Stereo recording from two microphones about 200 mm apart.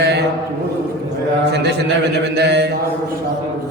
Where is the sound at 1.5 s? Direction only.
55° right (ahead or behind).